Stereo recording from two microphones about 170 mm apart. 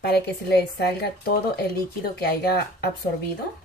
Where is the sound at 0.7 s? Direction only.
70° left (ahead or behind).